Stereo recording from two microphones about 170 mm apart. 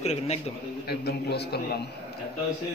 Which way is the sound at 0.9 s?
75° left (ahead or behind).